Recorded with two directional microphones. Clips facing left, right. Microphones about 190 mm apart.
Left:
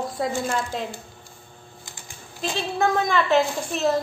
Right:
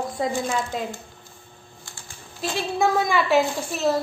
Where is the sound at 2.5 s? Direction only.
10° right (ahead or behind).